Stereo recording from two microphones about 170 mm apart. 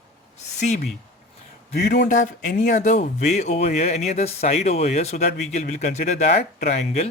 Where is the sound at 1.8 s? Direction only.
75° left (ahead or behind).